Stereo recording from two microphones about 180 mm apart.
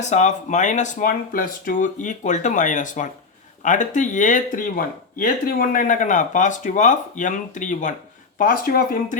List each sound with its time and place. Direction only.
0.1 s speech: 40° left (ahead or behind)